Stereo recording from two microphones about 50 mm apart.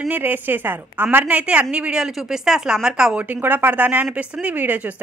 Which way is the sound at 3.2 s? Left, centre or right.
Right.